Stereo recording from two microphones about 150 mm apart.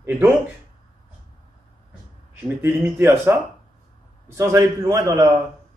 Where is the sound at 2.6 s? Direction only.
15° right (ahead or behind).